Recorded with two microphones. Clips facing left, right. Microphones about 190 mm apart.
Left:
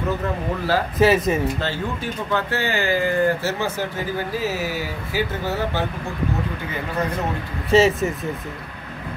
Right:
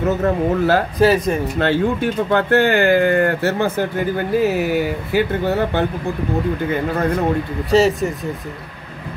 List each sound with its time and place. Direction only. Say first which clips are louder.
0.0 s speech: right 7 dB; 50° right (ahead or behind)
0.9 s speech: right 2 dB; centre (ahead or behind)
1.6 s speech: right 9 dB; 60° right (ahead or behind)
7.7 s speech: right 2 dB; centre (ahead or behind)